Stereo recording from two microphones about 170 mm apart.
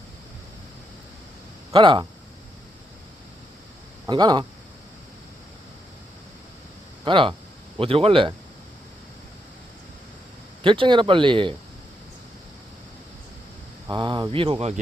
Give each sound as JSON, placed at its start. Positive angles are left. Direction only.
{"t": 1.7, "sound": "speech", "side_deg": -25}
{"t": 4.1, "sound": "speech", "side_deg": -25}
{"t": 7.0, "sound": "speech", "side_deg": -30}
{"t": 10.6, "sound": "speech", "side_deg": -30}
{"t": 13.8, "sound": "speech", "side_deg": -25}